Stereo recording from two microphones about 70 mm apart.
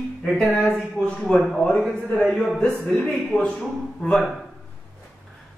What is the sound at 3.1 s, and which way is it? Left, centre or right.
A woman's voice, centre.